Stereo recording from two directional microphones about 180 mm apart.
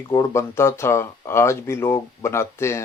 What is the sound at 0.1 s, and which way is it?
Speech, 15° left (ahead or behind).